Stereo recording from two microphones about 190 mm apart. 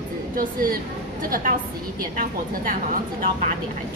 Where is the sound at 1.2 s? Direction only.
50° right (ahead or behind).